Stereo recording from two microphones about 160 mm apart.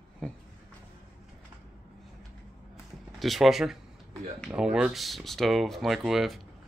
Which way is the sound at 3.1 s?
Centre (ahead or behind).